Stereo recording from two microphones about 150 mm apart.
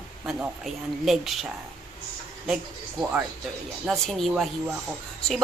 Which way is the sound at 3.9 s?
Centre (ahead or behind).